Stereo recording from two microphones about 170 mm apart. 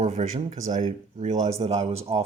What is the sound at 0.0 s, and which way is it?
Speech, 45° right (ahead or behind).